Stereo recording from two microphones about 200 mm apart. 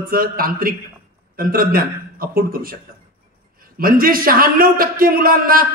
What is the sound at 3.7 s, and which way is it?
A man's voice, 45° right (ahead or behind).